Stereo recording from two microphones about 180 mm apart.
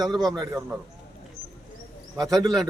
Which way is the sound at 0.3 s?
20° right (ahead or behind).